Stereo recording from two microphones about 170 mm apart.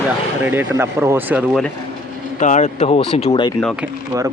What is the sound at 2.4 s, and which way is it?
Speech, 45° left (ahead or behind).